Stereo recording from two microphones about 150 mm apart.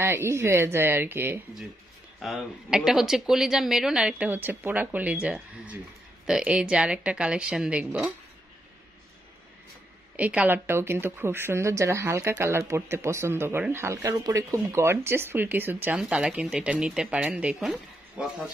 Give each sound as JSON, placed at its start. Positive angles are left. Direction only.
{"t": 0.0, "sound": "speech", "side_deg": -15}
{"t": 2.2, "sound": "a woman's voice", "side_deg": 0}
{"t": 10.1, "sound": "speech", "side_deg": -10}